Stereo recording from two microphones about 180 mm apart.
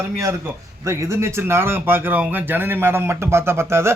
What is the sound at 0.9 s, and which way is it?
Speech, 15° right (ahead or behind).